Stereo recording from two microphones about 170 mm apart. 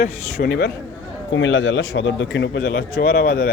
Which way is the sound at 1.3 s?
90° left.